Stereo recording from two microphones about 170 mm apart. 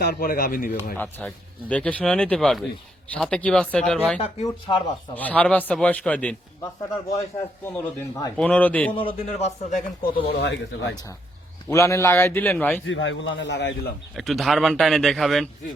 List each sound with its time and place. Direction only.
0.0 s speech: 60° left (ahead or behind)
0.9 s a man's voice: 10° left (ahead or behind)
4.7 s speech: 25° left (ahead or behind)
5.1 s a man's voice: 10° left (ahead or behind)
6.6 s a man's voice: 25° left (ahead or behind)
9.0 s a man's voice: 30° left (ahead or behind)
10.2 s speech: 85° left
11.7 s a man's voice: 15° left (ahead or behind)
12.8 s a man's voice: 90° left
14.2 s speech: centre (ahead or behind)